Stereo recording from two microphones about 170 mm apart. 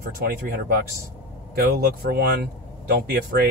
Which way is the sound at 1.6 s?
70° right (ahead or behind).